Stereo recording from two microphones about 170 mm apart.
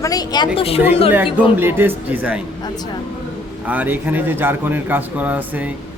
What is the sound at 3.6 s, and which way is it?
A man's voice, 10° right (ahead or behind).